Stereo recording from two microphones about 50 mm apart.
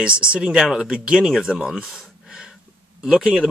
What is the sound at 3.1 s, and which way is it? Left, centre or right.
Speech, right.